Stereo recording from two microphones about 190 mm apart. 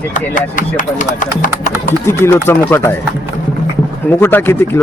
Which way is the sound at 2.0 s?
15° left (ahead or behind).